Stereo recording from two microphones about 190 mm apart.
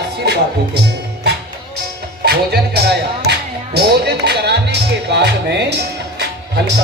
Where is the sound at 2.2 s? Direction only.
60° right (ahead or behind).